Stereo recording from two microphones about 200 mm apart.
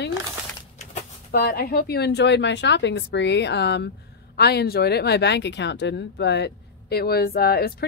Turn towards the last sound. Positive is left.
turn(degrees=50)  # may be behind; listen again after turning